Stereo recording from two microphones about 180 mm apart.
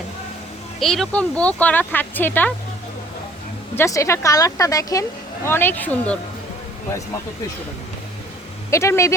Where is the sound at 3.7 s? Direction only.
15° left (ahead or behind).